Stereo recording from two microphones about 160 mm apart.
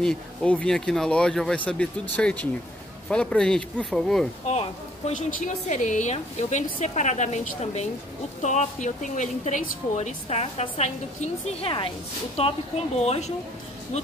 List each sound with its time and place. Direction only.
0.0 s speech: 5° left (ahead or behind)
4.5 s a woman's voice: 40° left (ahead or behind)